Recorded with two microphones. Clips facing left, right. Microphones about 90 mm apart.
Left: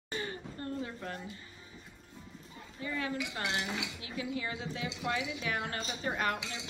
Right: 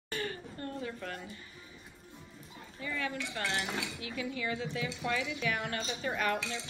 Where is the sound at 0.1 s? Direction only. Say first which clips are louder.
Right 1 dB; 25° left (ahead or behind).